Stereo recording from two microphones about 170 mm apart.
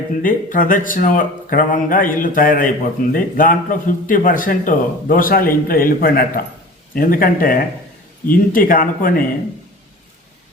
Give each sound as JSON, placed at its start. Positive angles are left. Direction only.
{"t": 0.2, "sound": "speech", "side_deg": 50}